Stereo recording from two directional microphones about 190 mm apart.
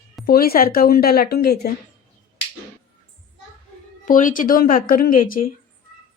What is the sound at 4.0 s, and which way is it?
Speech, 45° left (ahead or behind).